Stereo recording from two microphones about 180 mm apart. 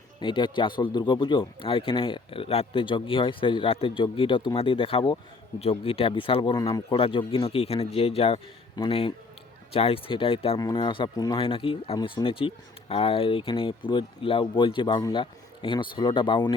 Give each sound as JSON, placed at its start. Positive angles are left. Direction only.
{"t": 0.2, "sound": "speech", "side_deg": 25}